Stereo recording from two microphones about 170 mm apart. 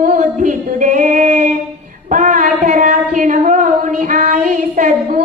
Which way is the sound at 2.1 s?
50° right (ahead or behind).